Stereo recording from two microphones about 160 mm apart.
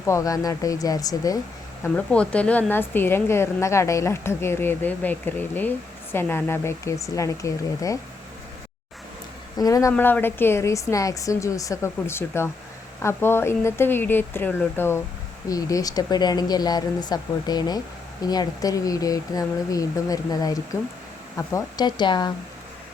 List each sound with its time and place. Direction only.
0.0 s speech: 20° left (ahead or behind)
1.8 s a woman's voice: 5° left (ahead or behind)
9.6 s a woman's voice: 20° left (ahead or behind)